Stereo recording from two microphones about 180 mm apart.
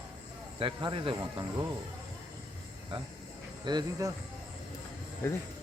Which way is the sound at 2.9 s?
30° right (ahead or behind).